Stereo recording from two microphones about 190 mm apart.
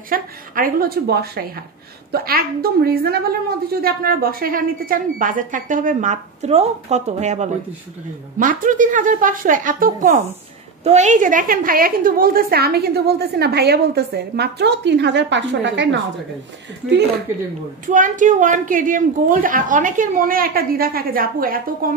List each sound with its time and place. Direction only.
0.1 s a woman's voice: 50° right (ahead or behind); by 16.0 s 70° right (ahead or behind)
17.8 s a woman's voice: 45° right (ahead or behind)